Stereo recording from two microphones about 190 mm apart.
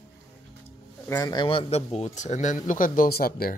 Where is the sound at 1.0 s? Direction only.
20° left (ahead or behind); by 3.5 s 50° left (ahead or behind).